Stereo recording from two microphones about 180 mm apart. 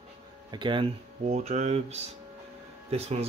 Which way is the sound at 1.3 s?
40° right (ahead or behind).